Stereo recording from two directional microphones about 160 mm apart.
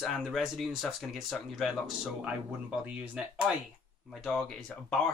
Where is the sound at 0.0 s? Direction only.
Centre (ahead or behind).